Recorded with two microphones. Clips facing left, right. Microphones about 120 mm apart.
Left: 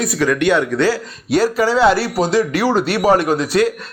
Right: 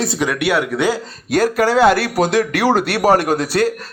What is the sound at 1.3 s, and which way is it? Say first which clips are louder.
A man's voice: even; 50° right (ahead or behind).